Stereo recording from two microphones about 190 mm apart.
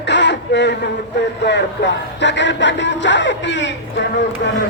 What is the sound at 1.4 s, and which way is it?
Music, 65° left (ahead or behind).